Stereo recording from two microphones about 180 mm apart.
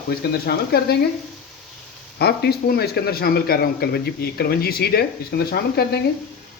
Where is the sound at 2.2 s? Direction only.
60° left (ahead or behind).